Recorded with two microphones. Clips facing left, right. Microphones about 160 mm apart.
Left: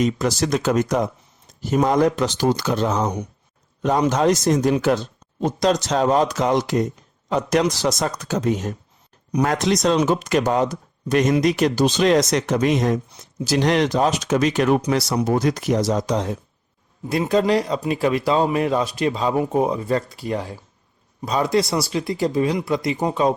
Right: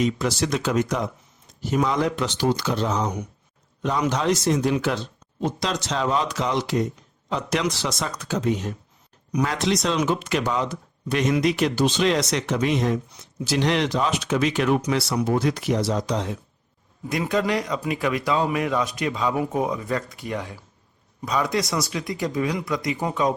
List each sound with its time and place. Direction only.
0.0 s speech: 40° left (ahead or behind)
4.1 s speech: 45° left (ahead or behind)
17.1 s speech: 30° left (ahead or behind)